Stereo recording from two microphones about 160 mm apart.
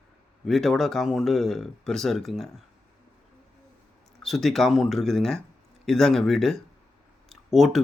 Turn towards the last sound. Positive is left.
turn(degrees=0)  # may be behind; listen again after turning